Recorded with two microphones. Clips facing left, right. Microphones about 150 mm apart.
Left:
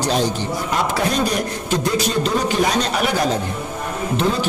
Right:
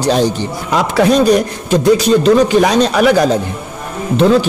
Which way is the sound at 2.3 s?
90° right.